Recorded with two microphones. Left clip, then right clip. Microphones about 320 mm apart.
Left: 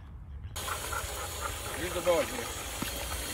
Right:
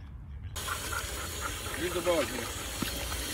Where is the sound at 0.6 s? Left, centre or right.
Left.